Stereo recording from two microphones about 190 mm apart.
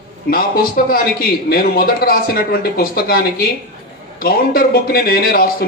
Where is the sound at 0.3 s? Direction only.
50° left (ahead or behind).